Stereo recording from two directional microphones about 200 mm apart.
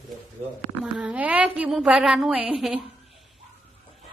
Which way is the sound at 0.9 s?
5° right (ahead or behind).